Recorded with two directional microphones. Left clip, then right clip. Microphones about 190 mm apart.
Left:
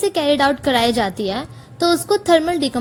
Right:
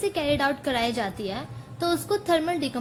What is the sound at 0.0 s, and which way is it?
A woman's voice, 50° left (ahead or behind).